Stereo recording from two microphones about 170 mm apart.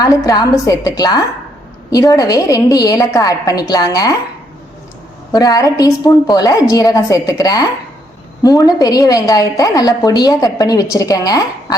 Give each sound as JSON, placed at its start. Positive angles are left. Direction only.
{"t": 0.0, "sound": "a woman's voice", "side_deg": 25}
{"t": 5.3, "sound": "a woman's voice", "side_deg": 20}